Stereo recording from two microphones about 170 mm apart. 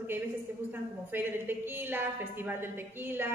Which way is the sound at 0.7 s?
10° right (ahead or behind).